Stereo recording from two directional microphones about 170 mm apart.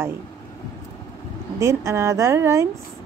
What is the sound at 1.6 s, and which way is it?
Speech, 15° right (ahead or behind).